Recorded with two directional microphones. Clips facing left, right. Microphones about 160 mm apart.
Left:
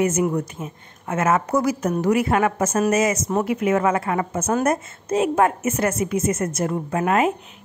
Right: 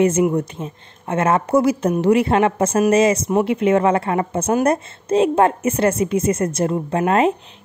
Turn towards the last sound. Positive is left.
turn(degrees=-30)  # may be behind; listen again after turning